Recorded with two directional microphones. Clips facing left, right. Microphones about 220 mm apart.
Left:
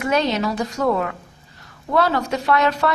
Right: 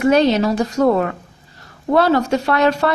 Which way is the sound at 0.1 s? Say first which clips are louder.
Right 4 dB; 30° right (ahead or behind).